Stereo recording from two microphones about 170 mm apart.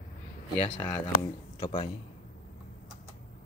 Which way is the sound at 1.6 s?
40° left (ahead or behind).